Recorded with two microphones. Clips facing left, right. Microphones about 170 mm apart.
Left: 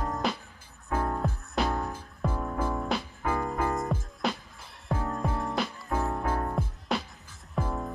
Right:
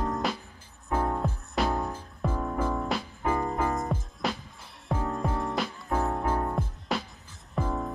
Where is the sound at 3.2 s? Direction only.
15° right (ahead or behind).